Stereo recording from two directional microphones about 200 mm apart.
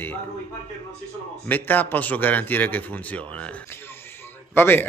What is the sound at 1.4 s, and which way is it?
A man's voice, 10° left (ahead or behind).